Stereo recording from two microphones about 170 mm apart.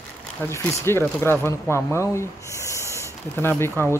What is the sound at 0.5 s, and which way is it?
Speech, 15° left (ahead or behind).